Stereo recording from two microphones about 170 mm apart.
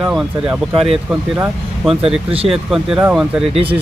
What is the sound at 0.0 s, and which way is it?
Speech, 5° right (ahead or behind).